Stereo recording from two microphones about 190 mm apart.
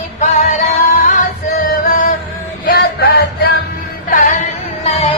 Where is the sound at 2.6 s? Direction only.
55° left (ahead or behind).